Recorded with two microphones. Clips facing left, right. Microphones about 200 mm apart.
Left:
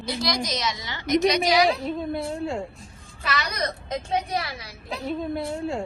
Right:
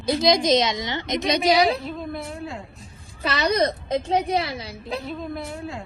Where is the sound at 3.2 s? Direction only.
30° right (ahead or behind).